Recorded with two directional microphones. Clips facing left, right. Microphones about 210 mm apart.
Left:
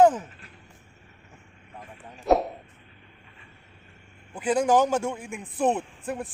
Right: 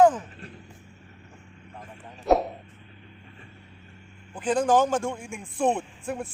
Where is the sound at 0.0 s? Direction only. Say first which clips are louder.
Even; 10° left (ahead or behind).